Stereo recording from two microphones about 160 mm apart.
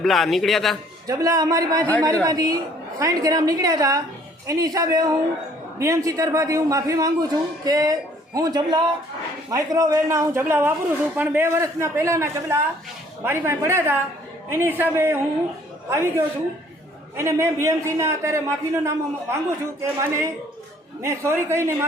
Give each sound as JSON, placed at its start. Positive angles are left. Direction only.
{"t": 0.0, "sound": "a man's voice", "side_deg": 0}
{"t": 1.0, "sound": "a man's voice", "side_deg": -20}